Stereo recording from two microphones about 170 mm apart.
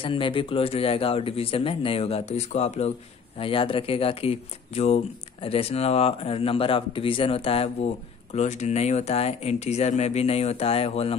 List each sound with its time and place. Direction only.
0.0 s speech: 30° left (ahead or behind)